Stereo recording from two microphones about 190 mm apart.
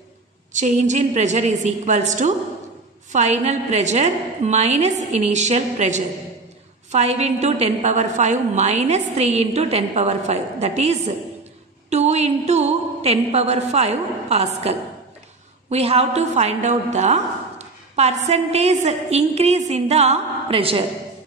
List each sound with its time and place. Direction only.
0.5 s a woman's voice: 40° right (ahead or behind)